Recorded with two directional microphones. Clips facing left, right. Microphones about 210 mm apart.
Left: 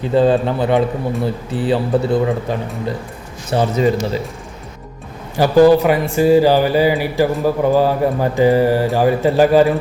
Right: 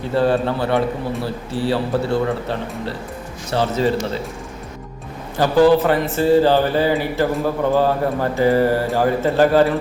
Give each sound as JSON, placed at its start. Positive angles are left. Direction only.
{"t": 0.1, "sound": "a man's voice", "side_deg": 20}
{"t": 5.4, "sound": "speech", "side_deg": 15}